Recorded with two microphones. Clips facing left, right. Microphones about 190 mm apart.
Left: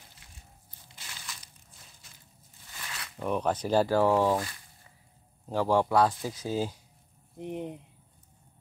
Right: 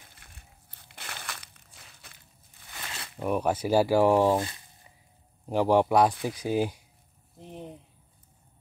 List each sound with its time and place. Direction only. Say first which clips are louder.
0.1 s crushing: even; 60° right (ahead or behind)
3.2 s speech: right 2 dB; 10° right (ahead or behind)
4.3 s a sound: right 3 dB; 25° right (ahead or behind)
5.5 s speech: right 3 dB; 15° right (ahead or behind)
7.3 s speech: left 6 dB; 15° left (ahead or behind)